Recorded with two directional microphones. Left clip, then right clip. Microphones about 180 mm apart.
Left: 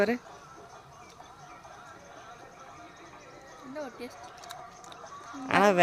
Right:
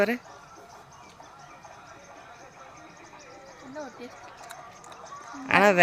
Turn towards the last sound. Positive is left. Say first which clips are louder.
# right 3 dB
turn(degrees=-5)  # may be behind; listen again after turning